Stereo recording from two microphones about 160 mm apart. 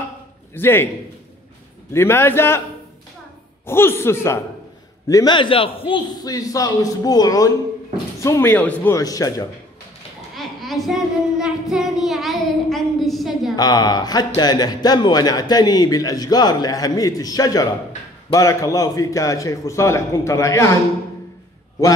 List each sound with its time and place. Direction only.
0.6 s a man's voice: 15° left (ahead or behind)
1.9 s a man's voice: 15° left (ahead or behind)
3.6 s a man's voice: 15° left (ahead or behind); by 5.9 s 35° left (ahead or behind)
6.1 s speech: 20° left (ahead or behind)
10.3 s child singing: centre (ahead or behind)
13.6 s speech: 25° left (ahead or behind)